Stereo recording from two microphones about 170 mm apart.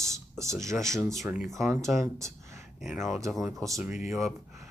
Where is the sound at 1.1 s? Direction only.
Centre (ahead or behind).